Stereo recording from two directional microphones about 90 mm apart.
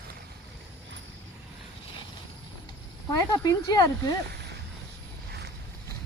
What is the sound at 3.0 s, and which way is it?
Speech, 40° left (ahead or behind).